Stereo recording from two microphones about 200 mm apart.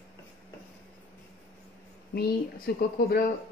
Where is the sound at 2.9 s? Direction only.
50° left (ahead or behind).